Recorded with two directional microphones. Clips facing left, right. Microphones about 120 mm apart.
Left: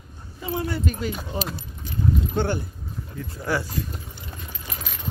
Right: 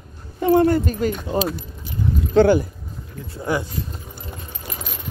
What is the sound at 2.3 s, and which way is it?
Speech, 90° right.